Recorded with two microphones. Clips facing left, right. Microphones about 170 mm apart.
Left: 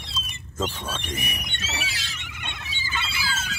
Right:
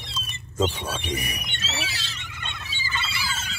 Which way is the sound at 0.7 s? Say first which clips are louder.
Right 2 dB; 10° right (ahead or behind).